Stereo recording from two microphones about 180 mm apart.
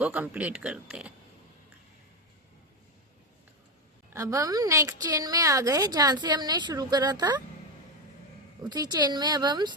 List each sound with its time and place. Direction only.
0.0 s speech: 10° right (ahead or behind)
4.1 s a woman's voice: 15° right (ahead or behind)
8.6 s a woman's voice: 20° right (ahead or behind)